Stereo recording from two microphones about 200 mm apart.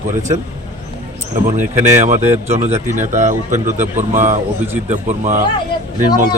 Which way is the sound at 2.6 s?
35° right (ahead or behind).